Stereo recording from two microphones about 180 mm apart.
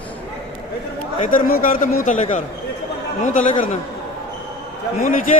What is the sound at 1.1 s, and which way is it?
A man's voice, 45° left (ahead or behind).